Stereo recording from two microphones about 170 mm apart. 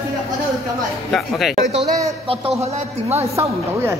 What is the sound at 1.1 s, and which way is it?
Speech, centre (ahead or behind).